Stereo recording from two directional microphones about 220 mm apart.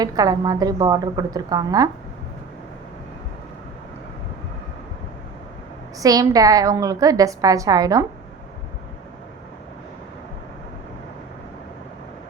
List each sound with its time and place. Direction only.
0.0 s a woman's voice: 15° right (ahead or behind)
6.0 s a woman's voice: 15° right (ahead or behind)